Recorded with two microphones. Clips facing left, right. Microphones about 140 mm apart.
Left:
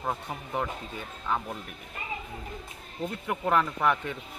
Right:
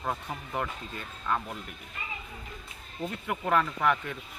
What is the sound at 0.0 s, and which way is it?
A man's voice, 15° left (ahead or behind).